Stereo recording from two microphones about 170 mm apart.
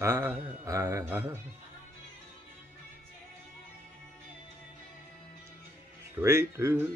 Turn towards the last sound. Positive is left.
turn(degrees=-15)  # may be behind; listen again after turning